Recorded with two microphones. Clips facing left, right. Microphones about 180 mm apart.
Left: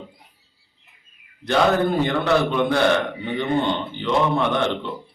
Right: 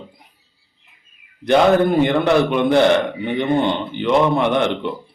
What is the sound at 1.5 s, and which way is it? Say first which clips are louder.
A man's voice: right 5 dB; 15° right (ahead or behind).